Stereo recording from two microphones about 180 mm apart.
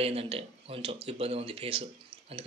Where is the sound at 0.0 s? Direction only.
30° right (ahead or behind).